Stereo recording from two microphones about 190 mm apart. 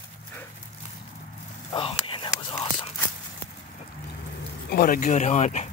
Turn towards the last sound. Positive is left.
turn(degrees=35)  # may be behind; listen again after turning